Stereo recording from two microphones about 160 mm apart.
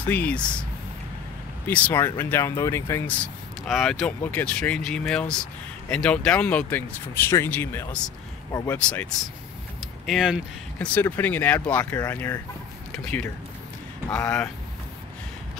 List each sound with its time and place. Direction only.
0.0 s speech: 10° left (ahead or behind)
1.7 s speech: 10° left (ahead or behind)
3.6 s speech: centre (ahead or behind)
8.5 s speech: 20° left (ahead or behind)
8.7 s speech: 10° left (ahead or behind)
10.9 s speech: 15° left (ahead or behind)